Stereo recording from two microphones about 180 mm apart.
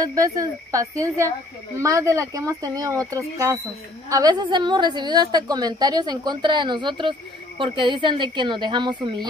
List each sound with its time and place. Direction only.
0.0 s a woman's voice: 20° right (ahead or behind)